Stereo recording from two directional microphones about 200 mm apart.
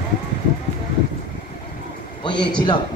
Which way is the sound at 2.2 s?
25° left (ahead or behind).